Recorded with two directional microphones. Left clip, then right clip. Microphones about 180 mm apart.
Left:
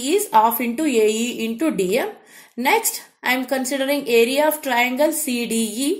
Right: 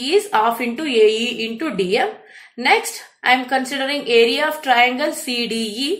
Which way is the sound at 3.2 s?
45° left (ahead or behind).